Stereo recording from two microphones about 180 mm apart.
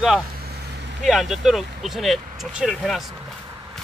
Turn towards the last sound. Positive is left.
turn(degrees=0)  # may be behind; listen again after turning